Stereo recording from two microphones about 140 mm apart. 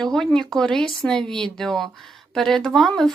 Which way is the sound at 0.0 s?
5° left (ahead or behind).